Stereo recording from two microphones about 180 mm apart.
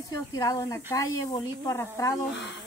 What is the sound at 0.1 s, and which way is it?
Speech, 20° left (ahead or behind).